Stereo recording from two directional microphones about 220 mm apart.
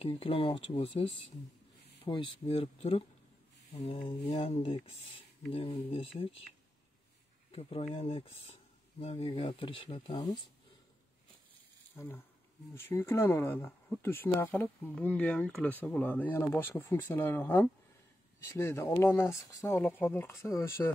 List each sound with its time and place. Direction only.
0.0 s speech: 25° left (ahead or behind)
7.5 s speech: 25° left (ahead or behind)
11.9 s speech: 10° left (ahead or behind)